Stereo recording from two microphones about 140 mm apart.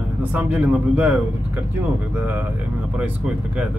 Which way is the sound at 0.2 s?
10° right (ahead or behind).